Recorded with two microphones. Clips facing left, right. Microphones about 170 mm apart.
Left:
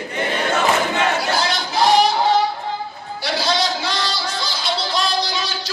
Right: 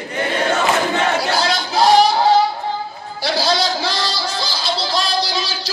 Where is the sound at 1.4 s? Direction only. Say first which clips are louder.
Right 2 dB; 35° right (ahead or behind).